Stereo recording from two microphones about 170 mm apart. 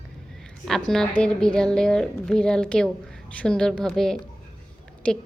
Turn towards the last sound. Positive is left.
turn(degrees=5)  # may be behind; listen again after turning